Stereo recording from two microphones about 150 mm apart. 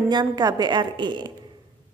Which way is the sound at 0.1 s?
25° right (ahead or behind).